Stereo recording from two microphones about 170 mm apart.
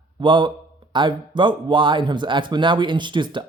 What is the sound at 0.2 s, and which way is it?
Speech, 25° right (ahead or behind).